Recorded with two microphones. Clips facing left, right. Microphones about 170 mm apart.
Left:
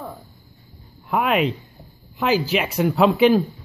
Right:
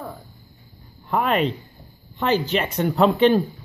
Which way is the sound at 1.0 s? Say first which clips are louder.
Left 1 dB; 5° left (ahead or behind).